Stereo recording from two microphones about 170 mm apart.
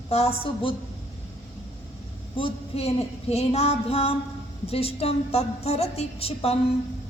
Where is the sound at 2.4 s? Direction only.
35° left (ahead or behind).